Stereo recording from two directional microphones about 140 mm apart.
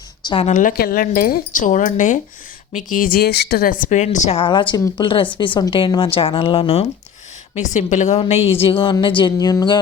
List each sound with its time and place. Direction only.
0.4 s speech: 70° left (ahead or behind)
2.7 s speech: 75° left (ahead or behind); by 4.4 s 55° left (ahead or behind)
4.4 s speech: 35° left (ahead or behind)
7.5 s a woman's voice: 60° left (ahead or behind)
8.4 s speech: 40° left (ahead or behind)